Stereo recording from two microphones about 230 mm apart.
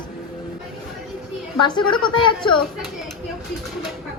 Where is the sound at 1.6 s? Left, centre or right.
Left.